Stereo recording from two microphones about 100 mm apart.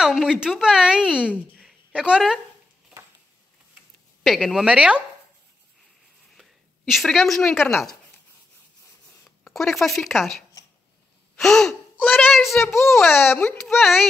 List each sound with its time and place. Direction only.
0.0 s a woman's voice: 5° right (ahead or behind)
4.2 s speech: centre (ahead or behind)
6.9 s speech: centre (ahead or behind)
9.4 s speech: 5° left (ahead or behind)
11.3 s gasp: 5° left (ahead or behind)
12.3 s speech: centre (ahead or behind)
13.0 s a child's voice: 20° left (ahead or behind)
13.7 s speech: centre (ahead or behind)